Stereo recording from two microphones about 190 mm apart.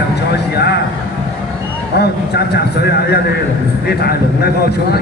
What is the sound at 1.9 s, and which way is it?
A man's voice, 60° left (ahead or behind).